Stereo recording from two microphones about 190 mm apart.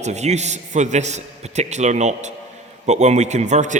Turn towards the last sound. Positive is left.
turn(degrees=-40)  # may be behind; listen again after turning